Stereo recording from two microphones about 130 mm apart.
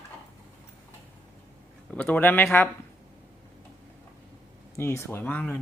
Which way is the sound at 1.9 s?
10° left (ahead or behind).